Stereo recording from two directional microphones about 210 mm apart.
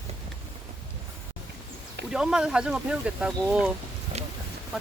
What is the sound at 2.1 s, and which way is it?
Speech, 5° right (ahead or behind).